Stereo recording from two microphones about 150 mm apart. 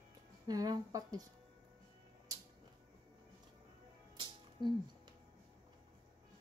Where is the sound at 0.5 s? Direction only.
25° right (ahead or behind).